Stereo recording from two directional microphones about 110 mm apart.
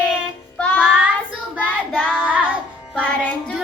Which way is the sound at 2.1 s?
10° right (ahead or behind).